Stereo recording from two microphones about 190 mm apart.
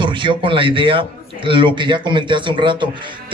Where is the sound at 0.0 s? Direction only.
25° right (ahead or behind).